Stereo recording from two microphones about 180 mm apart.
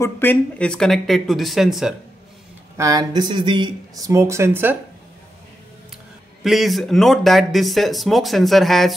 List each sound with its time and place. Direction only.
0.0 s speech: 10° left (ahead or behind)
2.8 s speech: 20° right (ahead or behind)
6.4 s speech: centre (ahead or behind)